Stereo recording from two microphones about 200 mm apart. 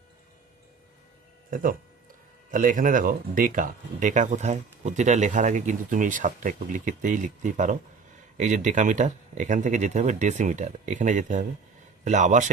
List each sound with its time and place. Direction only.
2.5 s speech: 40° right (ahead or behind)